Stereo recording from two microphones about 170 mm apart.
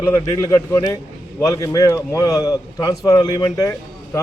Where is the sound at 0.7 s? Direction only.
20° left (ahead or behind).